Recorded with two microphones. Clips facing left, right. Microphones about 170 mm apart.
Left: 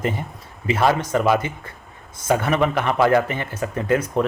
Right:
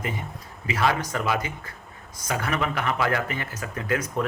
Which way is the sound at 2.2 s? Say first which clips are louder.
Left 8 dB; 25° left (ahead or behind).